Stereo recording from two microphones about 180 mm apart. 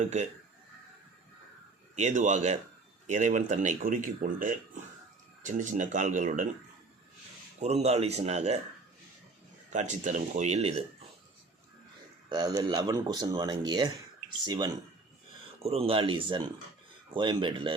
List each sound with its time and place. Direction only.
0.0 s speech: 40° right (ahead or behind)
2.0 s speech: 40° right (ahead or behind)
7.6 s speech: 35° right (ahead or behind)
9.6 s speech: 45° right (ahead or behind)
12.3 s speech: 20° right (ahead or behind)